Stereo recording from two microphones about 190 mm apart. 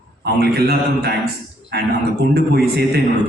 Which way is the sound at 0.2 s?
60° right (ahead or behind).